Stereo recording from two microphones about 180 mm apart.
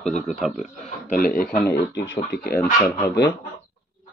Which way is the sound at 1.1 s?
50° left (ahead or behind).